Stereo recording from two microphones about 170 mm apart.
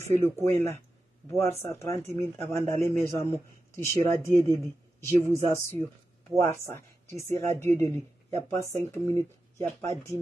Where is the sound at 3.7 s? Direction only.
15° left (ahead or behind).